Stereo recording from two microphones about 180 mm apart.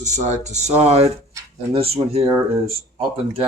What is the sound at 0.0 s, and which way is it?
Speech, 40° right (ahead or behind).